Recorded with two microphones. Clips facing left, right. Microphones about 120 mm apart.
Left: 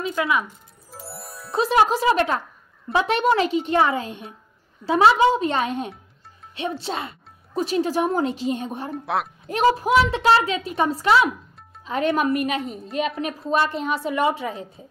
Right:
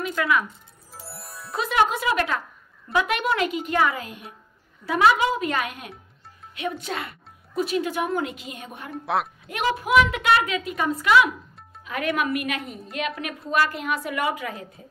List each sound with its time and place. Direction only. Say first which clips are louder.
0.0 s speech: left 1 dB; 20° left (ahead or behind)
0.9 s music: left 3 dB; centre (ahead or behind)
1.5 s a woman's voice: left 4 dB; 30° left (ahead or behind)
8.9 s speech: right 2 dB; centre (ahead or behind)
9.5 s a woman's voice: left 5 dB; 35° left (ahead or behind)